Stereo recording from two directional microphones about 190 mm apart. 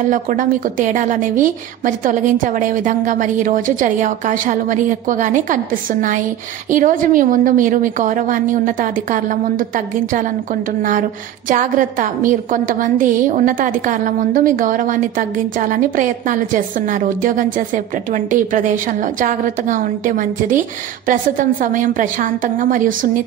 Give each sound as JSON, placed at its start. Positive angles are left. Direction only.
{"t": 0.1, "sound": "a woman's voice", "side_deg": -45}